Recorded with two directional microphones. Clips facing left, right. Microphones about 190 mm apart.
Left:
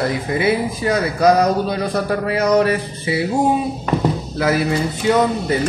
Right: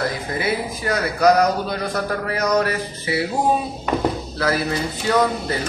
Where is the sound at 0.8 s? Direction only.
25° left (ahead or behind).